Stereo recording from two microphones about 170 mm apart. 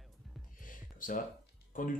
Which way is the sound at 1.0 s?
55° left (ahead or behind).